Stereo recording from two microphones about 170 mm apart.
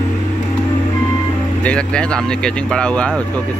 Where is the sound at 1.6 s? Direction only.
5° left (ahead or behind).